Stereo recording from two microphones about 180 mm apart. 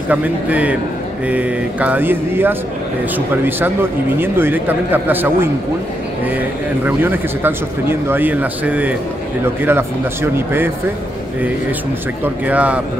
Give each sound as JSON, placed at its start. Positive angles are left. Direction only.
{"t": 0.1, "sound": "speech", "side_deg": -10}
{"t": 6.9, "sound": "speech", "side_deg": -10}
{"t": 12.4, "sound": "speech", "side_deg": -10}